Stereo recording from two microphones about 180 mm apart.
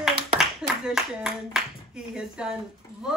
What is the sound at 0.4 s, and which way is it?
Speech, 5° right (ahead or behind).